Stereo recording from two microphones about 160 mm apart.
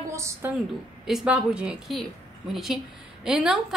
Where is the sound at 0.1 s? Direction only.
20° right (ahead or behind).